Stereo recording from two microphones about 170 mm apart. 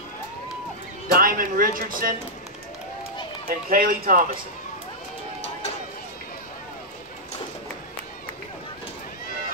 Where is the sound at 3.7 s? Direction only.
60° right (ahead or behind).